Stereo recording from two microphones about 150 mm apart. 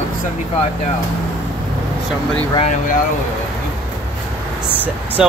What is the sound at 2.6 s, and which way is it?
Speech, 60° left (ahead or behind).